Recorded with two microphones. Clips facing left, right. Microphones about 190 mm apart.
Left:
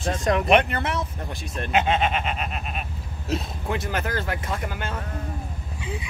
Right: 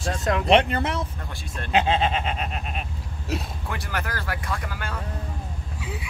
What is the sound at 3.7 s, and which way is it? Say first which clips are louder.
Speech: left 5 dB; 25° left (ahead or behind).